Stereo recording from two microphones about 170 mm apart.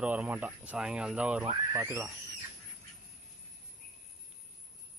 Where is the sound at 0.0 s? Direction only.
10° right (ahead or behind).